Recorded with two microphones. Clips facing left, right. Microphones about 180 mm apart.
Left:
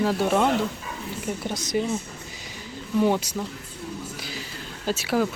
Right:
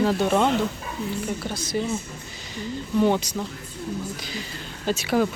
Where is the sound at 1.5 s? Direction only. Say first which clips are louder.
Left 1 dB; 20° left (ahead or behind).